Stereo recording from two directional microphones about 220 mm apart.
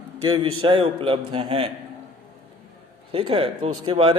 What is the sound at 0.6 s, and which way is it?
A man's voice, 25° right (ahead or behind).